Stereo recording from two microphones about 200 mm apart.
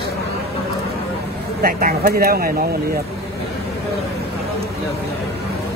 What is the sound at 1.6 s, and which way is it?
Speech, 50° right (ahead or behind).